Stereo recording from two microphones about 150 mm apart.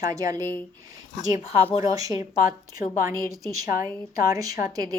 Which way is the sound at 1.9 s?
25° right (ahead or behind).